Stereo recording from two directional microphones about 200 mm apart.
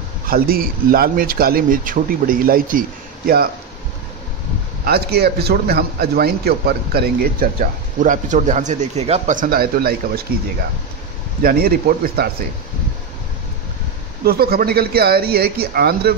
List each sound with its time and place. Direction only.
0.3 s a man's voice: 45° right (ahead or behind)
4.8 s a man's voice: 55° right (ahead or behind)
11.4 s a man's voice: 50° right (ahead or behind)
14.2 s a man's voice: 50° right (ahead or behind)